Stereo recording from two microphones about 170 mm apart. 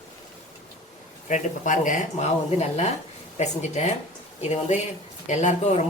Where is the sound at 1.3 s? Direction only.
50° left (ahead or behind).